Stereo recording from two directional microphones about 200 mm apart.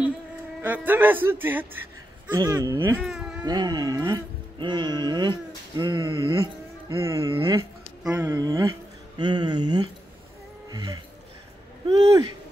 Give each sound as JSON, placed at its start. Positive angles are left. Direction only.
{"t": 0.6, "sound": "speech", "side_deg": -10}
{"t": 3.1, "sound": "a sound", "side_deg": -5}
{"t": 3.4, "sound": "speech", "side_deg": -20}
{"t": 8.0, "sound": "speech", "side_deg": -10}
{"t": 10.7, "sound": "music", "side_deg": -20}
{"t": 11.9, "sound": "speech", "side_deg": -20}